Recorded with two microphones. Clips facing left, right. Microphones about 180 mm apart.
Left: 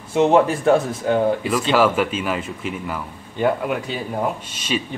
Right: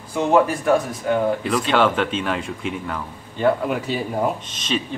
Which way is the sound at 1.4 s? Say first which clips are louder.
Left 1 dB; 5° left (ahead or behind).